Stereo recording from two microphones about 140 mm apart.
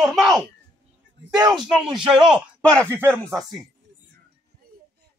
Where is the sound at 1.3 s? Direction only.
30° right (ahead or behind).